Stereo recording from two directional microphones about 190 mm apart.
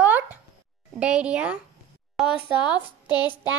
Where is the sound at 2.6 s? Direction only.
25° left (ahead or behind).